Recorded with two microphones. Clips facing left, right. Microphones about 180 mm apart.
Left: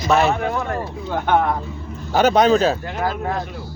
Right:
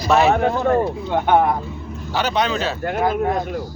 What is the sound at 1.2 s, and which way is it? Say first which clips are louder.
Speech: right 2 dB; 15° right (ahead or behind).